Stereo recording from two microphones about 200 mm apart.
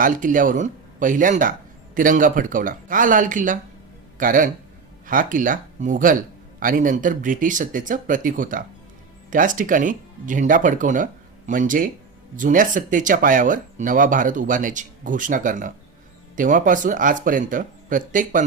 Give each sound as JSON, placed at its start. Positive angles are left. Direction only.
{"t": 0.0, "sound": "speech", "side_deg": -40}